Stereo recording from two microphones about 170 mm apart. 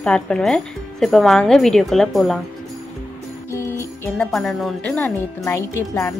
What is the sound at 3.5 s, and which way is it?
Jingle bell, 15° left (ahead or behind).